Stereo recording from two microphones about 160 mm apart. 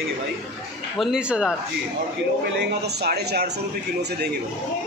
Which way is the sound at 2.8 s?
90° right.